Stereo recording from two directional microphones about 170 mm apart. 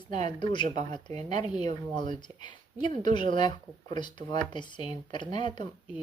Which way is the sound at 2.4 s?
30° left (ahead or behind).